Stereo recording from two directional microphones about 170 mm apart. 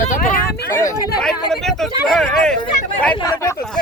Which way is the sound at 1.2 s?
Centre (ahead or behind).